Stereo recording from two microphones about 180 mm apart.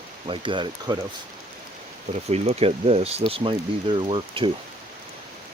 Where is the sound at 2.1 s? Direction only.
35° right (ahead or behind).